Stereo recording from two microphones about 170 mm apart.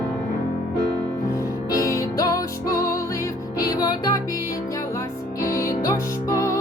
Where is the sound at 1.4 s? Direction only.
20° left (ahead or behind).